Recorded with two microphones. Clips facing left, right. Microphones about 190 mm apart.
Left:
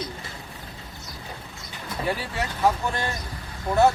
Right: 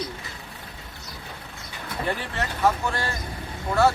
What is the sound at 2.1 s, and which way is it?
Speech, 5° left (ahead or behind).